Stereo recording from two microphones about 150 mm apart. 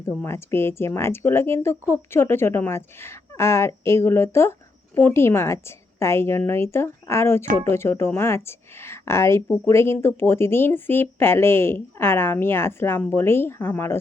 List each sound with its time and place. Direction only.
0.2 s speech: 15° left (ahead or behind)